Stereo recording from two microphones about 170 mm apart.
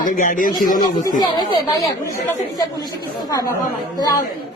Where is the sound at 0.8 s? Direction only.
25° left (ahead or behind).